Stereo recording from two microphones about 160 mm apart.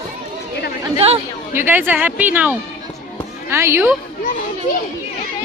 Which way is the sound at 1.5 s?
15° right (ahead or behind).